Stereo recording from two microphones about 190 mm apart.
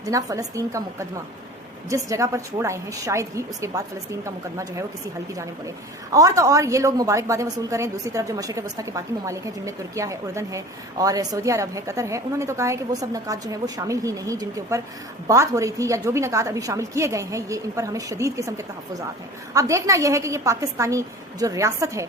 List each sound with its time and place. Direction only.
0.0 s a woman's voice: 20° right (ahead or behind)
6.1 s a woman's voice: 20° right (ahead or behind)